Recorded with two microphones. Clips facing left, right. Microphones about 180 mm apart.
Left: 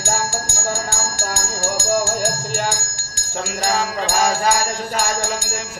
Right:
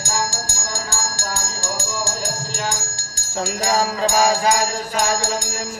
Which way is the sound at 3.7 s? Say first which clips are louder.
Right 3 dB; 40° right (ahead or behind).